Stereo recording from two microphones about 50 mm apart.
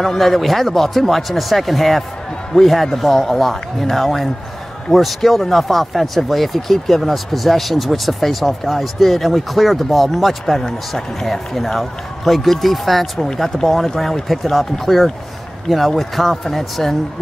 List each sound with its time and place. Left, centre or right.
0.0 s speech: centre